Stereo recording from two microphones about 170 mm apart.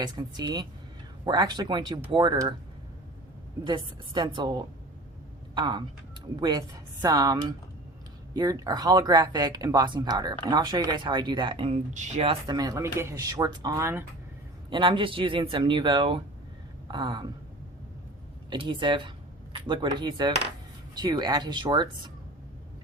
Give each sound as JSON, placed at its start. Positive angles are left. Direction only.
{"t": 0.0, "sound": "speech", "side_deg": -25}
{"t": 3.6, "sound": "speech", "side_deg": -25}
{"t": 14.7, "sound": "speech", "side_deg": -30}
{"t": 18.5, "sound": "speech", "side_deg": -30}